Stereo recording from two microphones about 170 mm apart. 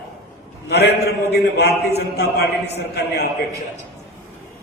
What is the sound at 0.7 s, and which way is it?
A man's voice, 75° left (ahead or behind).